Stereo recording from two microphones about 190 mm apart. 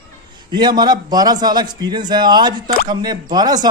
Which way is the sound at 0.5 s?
20° right (ahead or behind).